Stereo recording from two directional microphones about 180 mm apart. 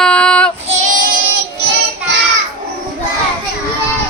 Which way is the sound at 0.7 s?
45° right (ahead or behind).